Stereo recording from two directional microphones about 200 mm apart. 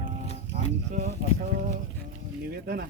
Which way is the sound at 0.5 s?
50° right (ahead or behind).